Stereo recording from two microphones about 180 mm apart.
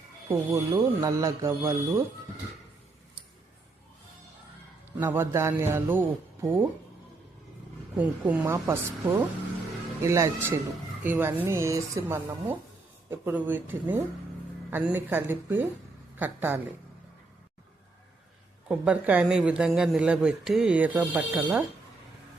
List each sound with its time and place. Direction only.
0.3 s speech: 15° right (ahead or behind)
4.9 s speech: 10° right (ahead or behind)
7.9 s speech: 10° right (ahead or behind)
18.7 s speech: 10° right (ahead or behind)